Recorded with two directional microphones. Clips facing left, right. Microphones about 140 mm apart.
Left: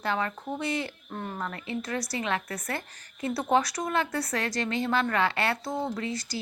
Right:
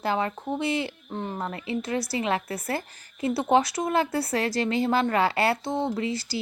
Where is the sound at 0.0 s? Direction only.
30° right (ahead or behind).